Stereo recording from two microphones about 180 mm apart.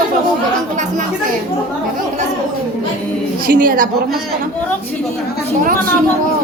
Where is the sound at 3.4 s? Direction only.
50° right (ahead or behind).